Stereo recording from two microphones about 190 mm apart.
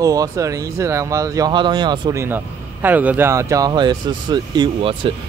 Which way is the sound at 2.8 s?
10° right (ahead or behind).